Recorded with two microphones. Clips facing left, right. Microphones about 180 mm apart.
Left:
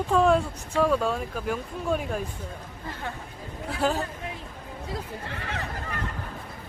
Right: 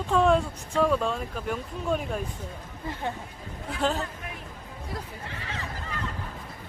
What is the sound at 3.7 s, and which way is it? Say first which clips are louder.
Speech: left 1 dB; 5° left (ahead or behind).